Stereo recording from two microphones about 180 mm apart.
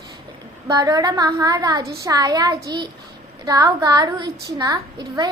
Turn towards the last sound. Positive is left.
turn(degrees=-20)  # may be behind; listen again after turning